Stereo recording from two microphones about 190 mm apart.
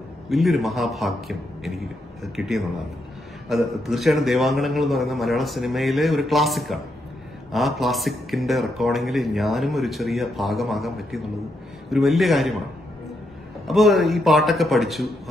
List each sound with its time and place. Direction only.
0.3 s speech: centre (ahead or behind)
13.7 s speech: centre (ahead or behind)